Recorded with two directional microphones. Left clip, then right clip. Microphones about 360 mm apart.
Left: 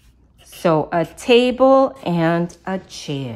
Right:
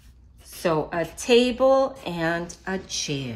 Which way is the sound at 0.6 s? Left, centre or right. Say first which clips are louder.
Left 7 dB; left.